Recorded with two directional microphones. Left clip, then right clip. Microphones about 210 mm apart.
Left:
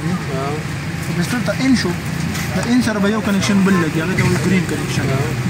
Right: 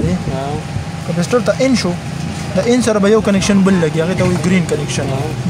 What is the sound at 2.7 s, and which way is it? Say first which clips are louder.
Speech: right 7 dB; 65° right (ahead or behind).